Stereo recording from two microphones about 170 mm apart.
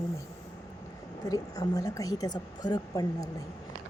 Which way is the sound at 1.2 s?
20° left (ahead or behind).